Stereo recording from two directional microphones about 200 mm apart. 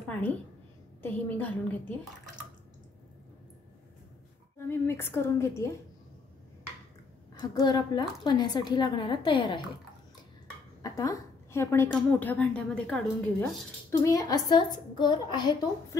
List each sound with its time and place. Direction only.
1.0 s a woman's voice: 10° left (ahead or behind)
4.6 s a woman's voice: 10° left (ahead or behind)
7.3 s a woman's voice: 20° left (ahead or behind)
10.8 s a woman's voice: 15° left (ahead or behind)